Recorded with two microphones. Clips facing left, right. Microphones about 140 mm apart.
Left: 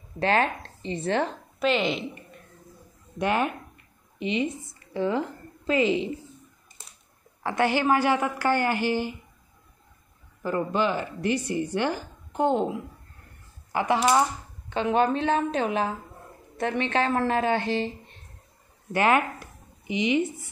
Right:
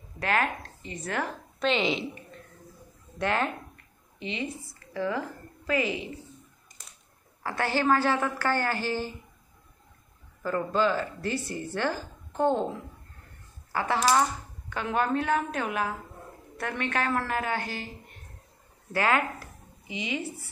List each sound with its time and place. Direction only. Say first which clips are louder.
0.2 s speech: left 4 dB; 30° left (ahead or behind)
1.6 s speech: left 2 dB; centre (ahead or behind)
3.2 s a woman's voice: left 3 dB; 15° left (ahead or behind)
7.4 s a woman's voice: left 3 dB; 15° left (ahead or behind)
10.4 s a woman's voice: left 1 dB; 20° left (ahead or behind)
13.7 s a sound: left 4 dB; 20° left (ahead or behind)
14.7 s speech: left 5 dB; 20° left (ahead or behind)